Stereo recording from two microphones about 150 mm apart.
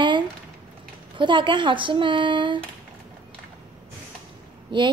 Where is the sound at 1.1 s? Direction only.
30° right (ahead or behind).